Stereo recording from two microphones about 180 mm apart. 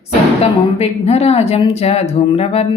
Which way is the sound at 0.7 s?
35° left (ahead or behind).